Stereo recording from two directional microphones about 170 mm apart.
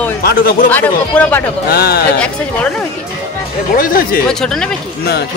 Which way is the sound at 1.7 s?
65° left (ahead or behind).